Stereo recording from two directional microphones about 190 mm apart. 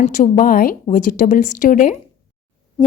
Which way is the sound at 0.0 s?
40° left (ahead or behind).